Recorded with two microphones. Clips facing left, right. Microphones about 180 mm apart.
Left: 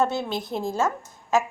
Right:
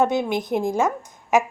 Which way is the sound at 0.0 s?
15° right (ahead or behind).